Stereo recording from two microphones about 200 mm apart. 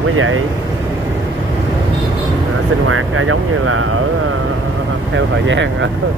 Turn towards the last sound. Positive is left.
turn(degrees=-70)  # may be behind; listen again after turning